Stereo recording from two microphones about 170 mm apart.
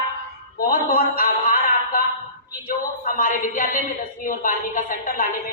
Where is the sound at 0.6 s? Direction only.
55° left (ahead or behind).